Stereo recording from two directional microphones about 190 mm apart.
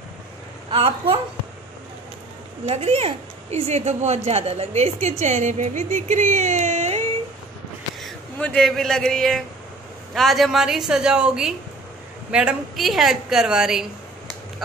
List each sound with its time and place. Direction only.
0.7 s a woman's voice: 30° right (ahead or behind)
2.6 s a woman's voice: 35° right (ahead or behind)
8.0 s a woman's voice: 5° left (ahead or behind)